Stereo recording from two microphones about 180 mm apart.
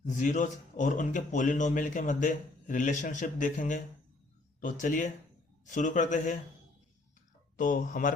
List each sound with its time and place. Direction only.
0.0 s a man's voice: 45° left (ahead or behind)
7.5 s a man's voice: 50° left (ahead or behind)